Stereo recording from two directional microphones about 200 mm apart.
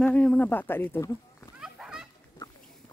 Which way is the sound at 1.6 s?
5° right (ahead or behind).